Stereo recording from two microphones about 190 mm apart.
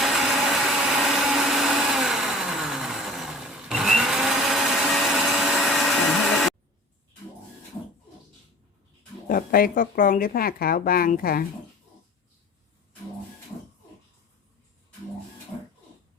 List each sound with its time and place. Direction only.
0.0 s blender: centre (ahead or behind)
9.2 s speech: 50° left (ahead or behind)